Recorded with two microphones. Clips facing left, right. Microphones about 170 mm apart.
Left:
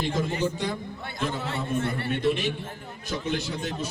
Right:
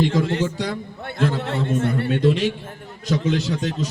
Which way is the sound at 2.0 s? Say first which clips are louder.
Right 6 dB; 90° right.